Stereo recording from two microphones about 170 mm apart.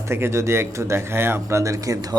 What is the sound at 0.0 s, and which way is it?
Speech, 15° right (ahead or behind).